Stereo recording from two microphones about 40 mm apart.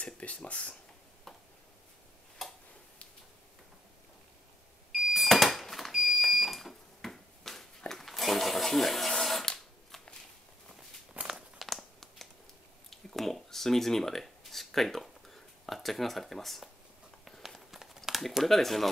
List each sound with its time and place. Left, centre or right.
0.0 s a sound: left
0.5 s speech: left
2.4 s tick-tock: centre
4.9 s smoke detector: centre
8.1 s a sound: centre
9.5 s shuffling cards: centre
11.2 s walk: centre
11.6 s crumpling: centre
12.9 s a sound: centre
17.4 s run: centre
18.4 s speech: centre